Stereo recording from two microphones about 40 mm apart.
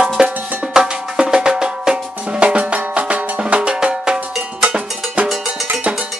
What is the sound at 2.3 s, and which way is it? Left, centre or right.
Drum, right.